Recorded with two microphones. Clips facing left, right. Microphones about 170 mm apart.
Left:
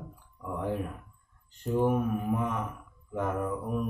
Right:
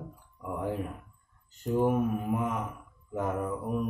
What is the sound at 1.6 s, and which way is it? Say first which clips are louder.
Mantra: even; 5° right (ahead or behind).